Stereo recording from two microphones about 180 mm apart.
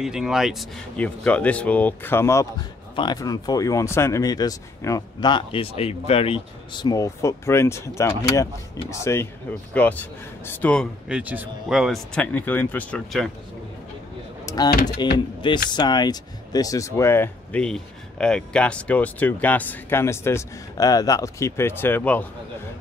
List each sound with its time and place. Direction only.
0.0 s speech: 5° right (ahead or behind)
11.1 s speech: 5° right (ahead or behind)
14.4 s a sound: 20° left (ahead or behind)
14.7 s speech: 55° left (ahead or behind)
15.1 s speech: 25° left (ahead or behind); by 22.2 s 10° left (ahead or behind)